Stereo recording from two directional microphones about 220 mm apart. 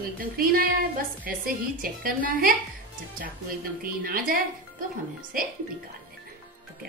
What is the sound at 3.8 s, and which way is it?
A woman's voice, 40° right (ahead or behind).